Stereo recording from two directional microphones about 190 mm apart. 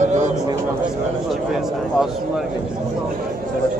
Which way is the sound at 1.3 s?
Centre (ahead or behind).